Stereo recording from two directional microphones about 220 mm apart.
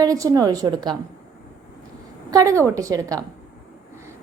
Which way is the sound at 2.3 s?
15° right (ahead or behind).